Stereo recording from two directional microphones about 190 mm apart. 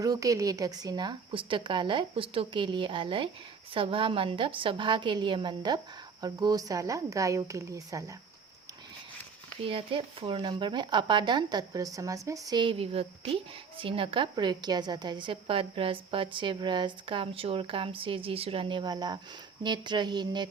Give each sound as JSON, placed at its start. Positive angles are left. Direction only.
{"t": 0.0, "sound": "a woman's voice", "side_deg": -20}
{"t": 9.6, "sound": "speech", "side_deg": -30}